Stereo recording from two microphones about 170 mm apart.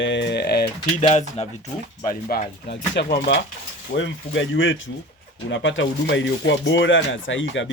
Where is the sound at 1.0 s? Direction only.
40° left (ahead or behind).